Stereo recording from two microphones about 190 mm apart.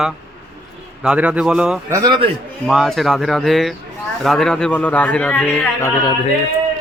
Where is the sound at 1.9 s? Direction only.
20° right (ahead or behind).